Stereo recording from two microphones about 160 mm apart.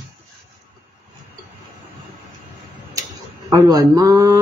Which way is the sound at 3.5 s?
25° right (ahead or behind).